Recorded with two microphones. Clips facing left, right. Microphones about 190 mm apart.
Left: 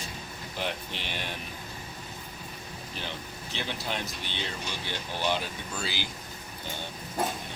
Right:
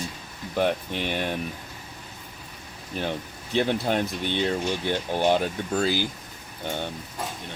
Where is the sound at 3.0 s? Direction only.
50° right (ahead or behind).